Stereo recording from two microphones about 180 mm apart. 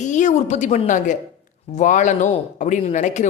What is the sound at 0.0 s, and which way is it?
A woman's voice, 40° left (ahead or behind).